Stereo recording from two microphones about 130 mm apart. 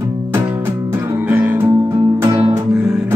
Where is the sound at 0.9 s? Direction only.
15° right (ahead or behind).